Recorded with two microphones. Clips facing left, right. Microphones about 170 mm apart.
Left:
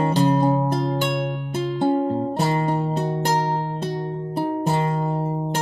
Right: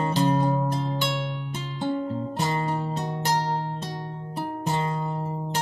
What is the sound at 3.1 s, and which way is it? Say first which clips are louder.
Music: left 4 dB; 50° left (ahead or behind).